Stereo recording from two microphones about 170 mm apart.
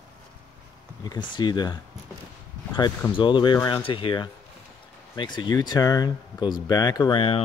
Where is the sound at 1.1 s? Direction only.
25° left (ahead or behind).